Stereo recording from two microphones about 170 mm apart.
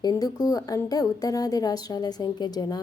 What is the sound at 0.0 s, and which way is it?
A woman's voice, 20° left (ahead or behind).